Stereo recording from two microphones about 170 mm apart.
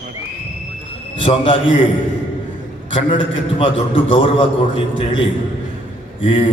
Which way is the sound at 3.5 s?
30° left (ahead or behind).